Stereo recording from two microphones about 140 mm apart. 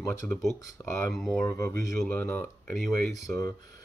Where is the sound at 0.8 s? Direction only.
15° left (ahead or behind).